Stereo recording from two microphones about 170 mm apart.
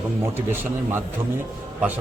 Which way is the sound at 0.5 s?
15° right (ahead or behind).